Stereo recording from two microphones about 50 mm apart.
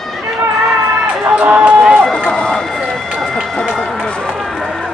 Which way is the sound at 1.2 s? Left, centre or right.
Right.